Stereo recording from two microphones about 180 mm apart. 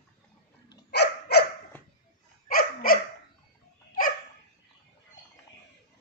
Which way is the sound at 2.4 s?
55° left (ahead or behind).